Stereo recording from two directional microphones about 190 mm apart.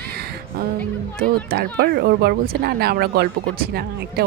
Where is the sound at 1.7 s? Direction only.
60° right (ahead or behind).